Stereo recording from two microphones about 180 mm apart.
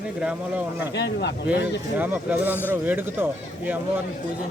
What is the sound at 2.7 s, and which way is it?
Speech, 10° right (ahead or behind).